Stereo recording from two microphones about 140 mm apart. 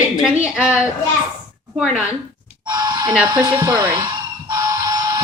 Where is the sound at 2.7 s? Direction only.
30° right (ahead or behind).